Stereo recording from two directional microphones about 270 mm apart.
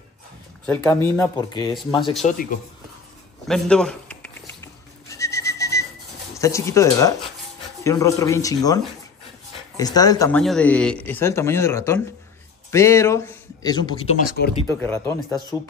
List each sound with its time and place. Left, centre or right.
0.7 s speech: centre
2.2 s a man's voice: left
3.4 s goat: centre
6.3 s speech: centre